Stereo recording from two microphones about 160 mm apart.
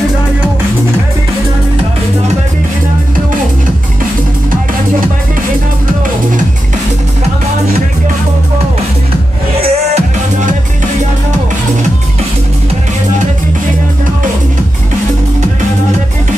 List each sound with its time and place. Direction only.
9.6 s music: 45° right (ahead or behind)